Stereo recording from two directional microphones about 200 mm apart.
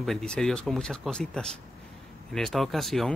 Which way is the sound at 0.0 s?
5° left (ahead or behind).